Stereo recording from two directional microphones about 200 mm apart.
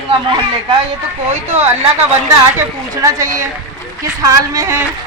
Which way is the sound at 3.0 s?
15° right (ahead or behind).